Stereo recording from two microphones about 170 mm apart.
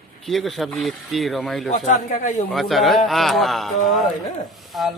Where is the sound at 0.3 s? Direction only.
Centre (ahead or behind).